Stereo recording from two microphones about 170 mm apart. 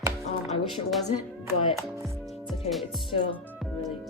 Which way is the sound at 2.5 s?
Centre (ahead or behind).